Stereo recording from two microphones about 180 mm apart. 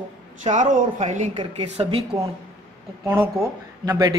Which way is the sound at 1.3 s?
30° right (ahead or behind).